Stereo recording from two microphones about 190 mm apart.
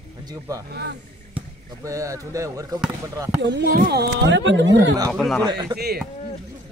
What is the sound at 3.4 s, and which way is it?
Speech, 65° right (ahead or behind).